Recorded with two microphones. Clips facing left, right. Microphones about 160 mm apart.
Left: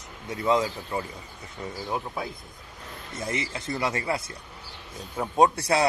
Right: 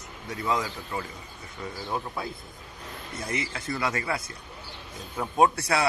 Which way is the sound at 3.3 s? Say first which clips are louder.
Left 1 dB; 25° left (ahead or behind).